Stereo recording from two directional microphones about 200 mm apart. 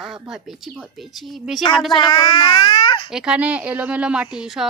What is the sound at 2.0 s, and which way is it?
A child's voice, 25° left (ahead or behind).